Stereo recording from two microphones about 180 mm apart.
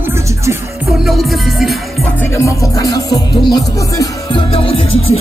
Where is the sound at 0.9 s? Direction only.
Centre (ahead or behind).